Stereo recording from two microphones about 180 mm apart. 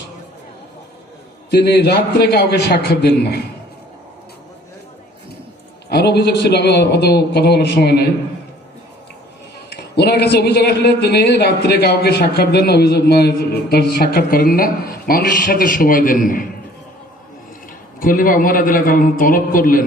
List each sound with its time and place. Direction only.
1.5 s speech: 65° left (ahead or behind)
5.9 s speech: 65° left (ahead or behind)
9.6 s speech: 65° left (ahead or behind)
18.0 s a man's voice: 50° left (ahead or behind)